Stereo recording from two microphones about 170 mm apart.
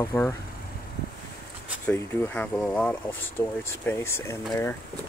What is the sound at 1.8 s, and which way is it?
Speech, 10° left (ahead or behind).